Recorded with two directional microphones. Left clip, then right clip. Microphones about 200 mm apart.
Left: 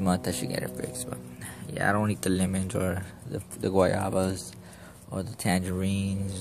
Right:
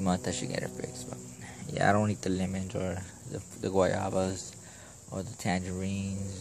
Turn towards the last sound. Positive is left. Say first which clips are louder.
# left 5 dB
turn(degrees=10)  # may be behind; listen again after turning